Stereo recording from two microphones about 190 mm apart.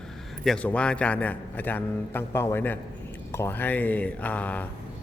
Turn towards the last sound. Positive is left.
turn(degrees=10)  # may be behind; listen again after turning